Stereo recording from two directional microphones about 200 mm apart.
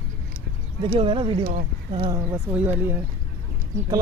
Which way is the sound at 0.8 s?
25° right (ahead or behind).